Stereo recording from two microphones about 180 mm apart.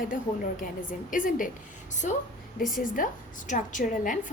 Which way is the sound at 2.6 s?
55° left (ahead or behind).